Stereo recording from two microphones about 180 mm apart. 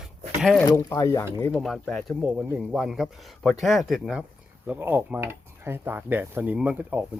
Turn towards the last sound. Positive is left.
turn(degrees=-10)  # may be behind; listen again after turning